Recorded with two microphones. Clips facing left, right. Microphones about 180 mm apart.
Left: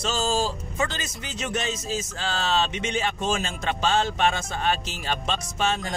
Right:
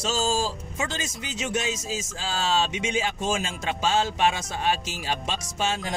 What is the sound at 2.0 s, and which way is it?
Speech, 65° left (ahead or behind).